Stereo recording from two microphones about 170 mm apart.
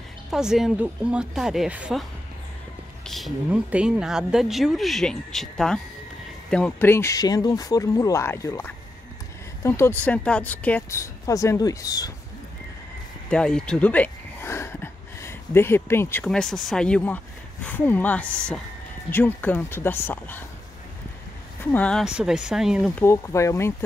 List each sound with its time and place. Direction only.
0.3 s speech: 5° right (ahead or behind)
3.1 s a woman's voice: centre (ahead or behind); by 12.1 s 20° left (ahead or behind)
13.3 s a sound: 5° left (ahead or behind)
16.3 s a woman's voice: 5° left (ahead or behind)
21.7 s a woman's voice: 5° left (ahead or behind)
22.0 s speech: 5° right (ahead or behind)
22.9 s a woman's voice: 15° left (ahead or behind)